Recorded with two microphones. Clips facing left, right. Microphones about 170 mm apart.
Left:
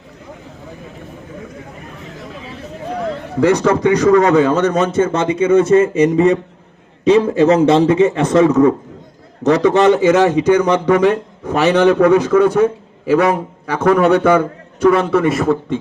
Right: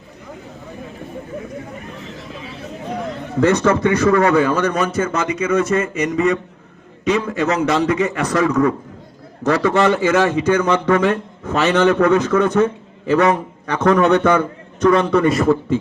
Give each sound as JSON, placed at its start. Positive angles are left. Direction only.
{"t": 3.4, "sound": "a man's voice", "side_deg": 15}